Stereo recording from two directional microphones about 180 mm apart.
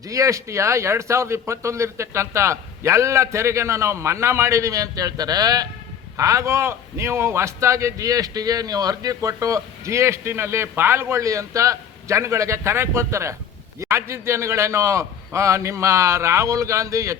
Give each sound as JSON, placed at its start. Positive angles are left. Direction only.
{"t": 0.1, "sound": "a man's voice", "side_deg": -15}